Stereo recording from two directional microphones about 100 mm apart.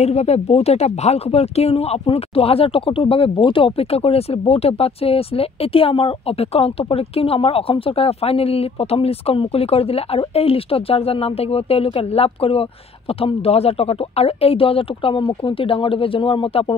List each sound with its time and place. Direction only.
0.0 s speech: 90° left; by 12.6 s 75° left (ahead or behind)
13.2 s speech: 85° left; by 16.7 s 60° left (ahead or behind)